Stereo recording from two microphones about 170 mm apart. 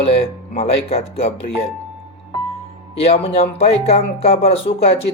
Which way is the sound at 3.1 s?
35° left (ahead or behind).